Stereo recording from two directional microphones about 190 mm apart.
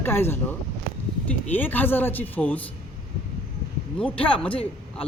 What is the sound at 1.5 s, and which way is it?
Speech, 10° left (ahead or behind).